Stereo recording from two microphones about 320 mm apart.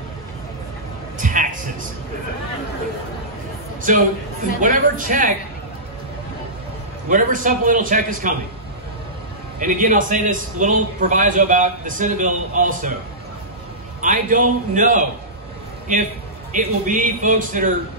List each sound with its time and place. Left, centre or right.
1.1 s music: right
3.9 s a man's voice: right
7.1 s a man's voice: right
9.6 s a man's voice: right
14.0 s a man's voice: right
16.5 s a man's voice: right